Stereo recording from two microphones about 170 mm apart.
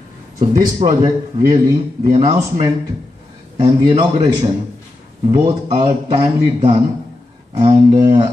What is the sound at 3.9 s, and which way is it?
Speech, 35° right (ahead or behind).